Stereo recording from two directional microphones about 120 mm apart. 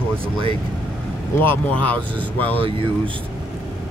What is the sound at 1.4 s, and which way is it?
Speech, 15° left (ahead or behind).